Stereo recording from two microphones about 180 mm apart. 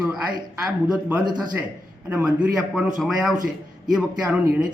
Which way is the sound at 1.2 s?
25° right (ahead or behind).